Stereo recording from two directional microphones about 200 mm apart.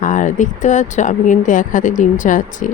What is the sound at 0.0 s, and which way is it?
Speech, 40° left (ahead or behind).